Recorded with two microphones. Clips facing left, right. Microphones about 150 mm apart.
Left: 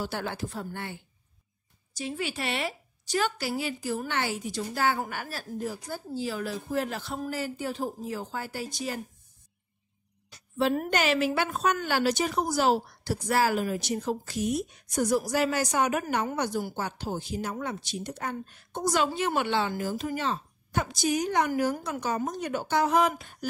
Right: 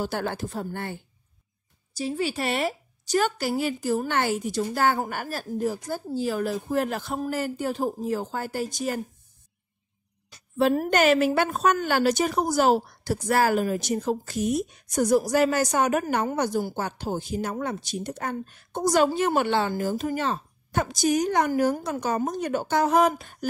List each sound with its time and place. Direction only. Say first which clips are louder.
0.0 s speech: right 4 dB; 50° right (ahead or behind)
2.0 s speech: right 5 dB; 35° right (ahead or behind)
10.6 s speech: right 5 dB; 45° right (ahead or behind)